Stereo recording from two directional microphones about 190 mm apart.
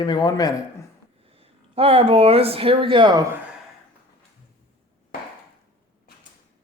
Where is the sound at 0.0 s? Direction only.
20° left (ahead or behind).